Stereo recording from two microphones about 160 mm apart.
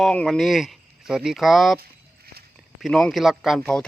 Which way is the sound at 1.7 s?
80° right.